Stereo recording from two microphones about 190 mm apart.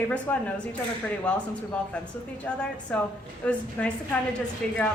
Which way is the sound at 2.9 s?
5° left (ahead or behind).